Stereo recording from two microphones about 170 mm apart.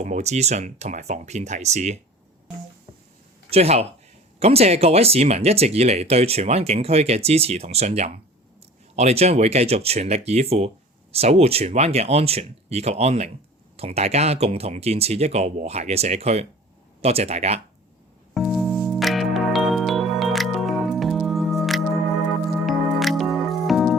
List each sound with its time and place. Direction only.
0.0 s speech: 40° right (ahead or behind)
3.5 s speech: 35° right (ahead or behind)
18.3 s music: centre (ahead or behind)